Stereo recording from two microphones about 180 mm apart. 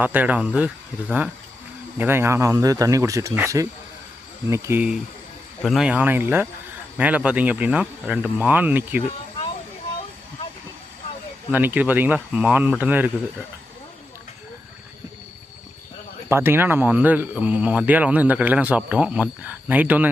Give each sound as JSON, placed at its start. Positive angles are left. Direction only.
{"t": 0.0, "sound": "speech", "side_deg": -10}
{"t": 11.5, "sound": "speech", "side_deg": -10}
{"t": 16.3, "sound": "speech", "side_deg": -15}